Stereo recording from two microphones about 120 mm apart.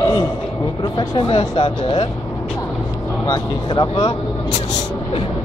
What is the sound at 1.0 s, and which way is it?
Speech, 45° left (ahead or behind).